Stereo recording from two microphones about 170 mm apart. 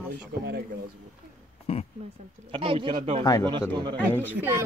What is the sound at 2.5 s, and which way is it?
Speech, 30° right (ahead or behind).